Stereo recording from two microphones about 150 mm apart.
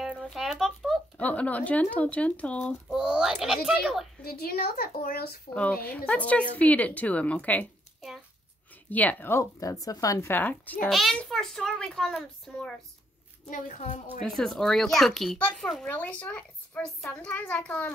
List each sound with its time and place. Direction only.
0.1 s a sound: centre (ahead or behind)
1.2 s speech: 10° left (ahead or behind)
2.9 s a child's voice: 5° right (ahead or behind)
4.2 s a woman's voice: 90° left
5.5 s speech: 10° left (ahead or behind)
10.9 s a child's voice: centre (ahead or behind)
13.5 s a woman's voice: 55° left (ahead or behind)
14.2 s speech: 5° left (ahead or behind)